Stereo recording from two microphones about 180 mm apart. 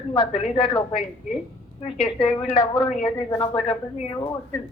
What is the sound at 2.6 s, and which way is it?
A woman's voice, 30° left (ahead or behind).